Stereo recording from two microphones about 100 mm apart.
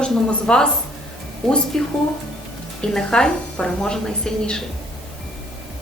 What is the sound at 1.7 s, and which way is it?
Speech, 5° left (ahead or behind).